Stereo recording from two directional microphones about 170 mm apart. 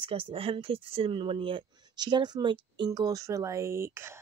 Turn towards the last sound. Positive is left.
turn(degrees=-15)  # may be behind; listen again after turning